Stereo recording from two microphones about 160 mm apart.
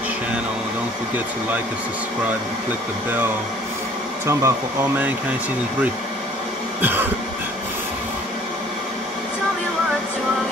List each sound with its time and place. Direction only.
4.3 s speech: 15° right (ahead or behind)
6.8 s cough: 10° right (ahead or behind)